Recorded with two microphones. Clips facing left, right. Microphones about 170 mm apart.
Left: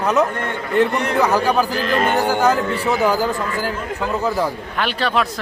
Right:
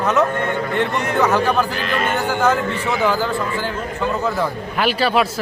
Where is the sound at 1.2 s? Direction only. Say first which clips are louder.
Even; 35° left (ahead or behind).